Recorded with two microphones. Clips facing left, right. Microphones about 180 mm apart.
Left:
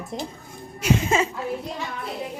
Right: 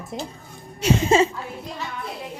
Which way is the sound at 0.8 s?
30° right (ahead or behind).